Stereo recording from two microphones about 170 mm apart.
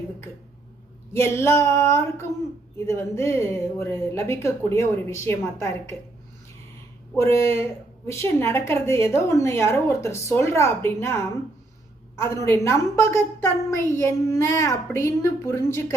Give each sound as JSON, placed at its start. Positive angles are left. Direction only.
{"t": 1.1, "sound": "a woman's voice", "side_deg": 15}
{"t": 7.2, "sound": "a woman's voice", "side_deg": 20}